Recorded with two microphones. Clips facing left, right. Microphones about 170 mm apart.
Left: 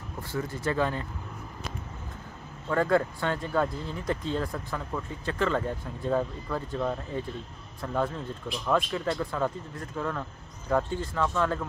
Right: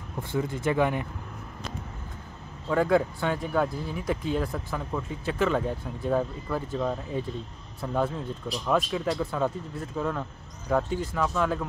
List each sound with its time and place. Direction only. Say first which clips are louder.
0.3 s speech: right 3 dB; 20° right (ahead or behind)
2.7 s speech: right 2 dB; 5° right (ahead or behind)